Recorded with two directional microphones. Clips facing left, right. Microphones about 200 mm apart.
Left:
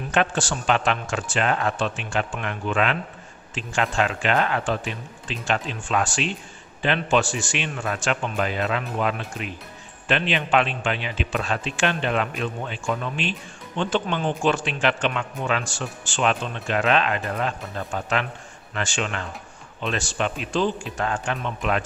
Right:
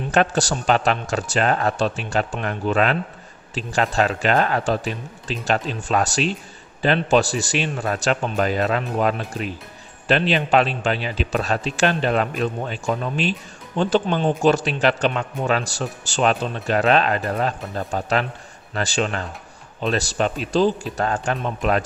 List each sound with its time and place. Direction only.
0.1 s a man's voice: 40° right (ahead or behind)